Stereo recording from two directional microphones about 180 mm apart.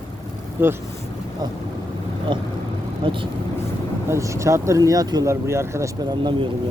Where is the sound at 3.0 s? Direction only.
30° right (ahead or behind).